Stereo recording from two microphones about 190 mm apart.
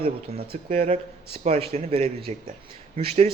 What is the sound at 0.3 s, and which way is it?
Speech, 50° right (ahead or behind).